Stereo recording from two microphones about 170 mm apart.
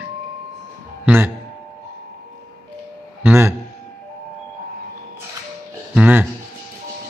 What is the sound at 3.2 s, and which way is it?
Music, 15° right (ahead or behind).